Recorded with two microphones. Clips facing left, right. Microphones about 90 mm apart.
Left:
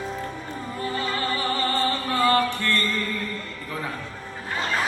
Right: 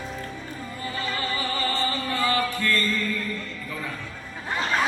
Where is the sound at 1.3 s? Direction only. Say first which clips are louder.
Left 3 dB; 45° left (ahead or behind).